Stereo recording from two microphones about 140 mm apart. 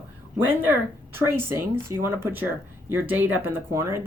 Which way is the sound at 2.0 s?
15° right (ahead or behind).